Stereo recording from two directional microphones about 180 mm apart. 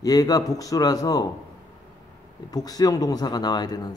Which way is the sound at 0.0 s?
20° left (ahead or behind).